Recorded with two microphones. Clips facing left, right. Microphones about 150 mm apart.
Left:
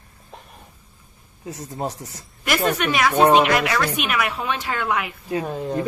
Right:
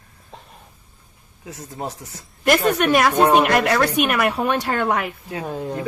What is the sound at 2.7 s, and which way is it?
Speech, 50° right (ahead or behind).